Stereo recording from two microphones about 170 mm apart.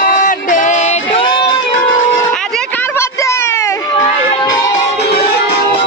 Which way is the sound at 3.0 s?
15° left (ahead or behind).